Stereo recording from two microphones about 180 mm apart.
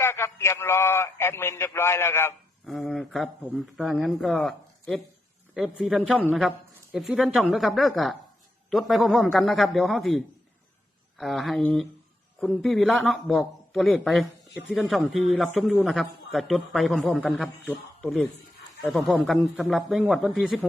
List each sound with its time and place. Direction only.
0.0 s a man's voice: 15° left (ahead or behind)
2.6 s a man's voice: centre (ahead or behind)